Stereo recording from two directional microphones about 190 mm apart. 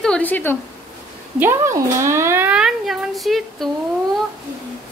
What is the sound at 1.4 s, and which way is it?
Speech, 15° right (ahead or behind).